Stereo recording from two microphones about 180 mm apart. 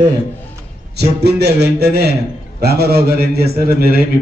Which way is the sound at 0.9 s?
65° right (ahead or behind).